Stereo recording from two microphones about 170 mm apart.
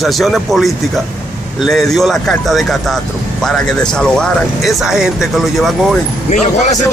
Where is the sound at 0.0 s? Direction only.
Centre (ahead or behind).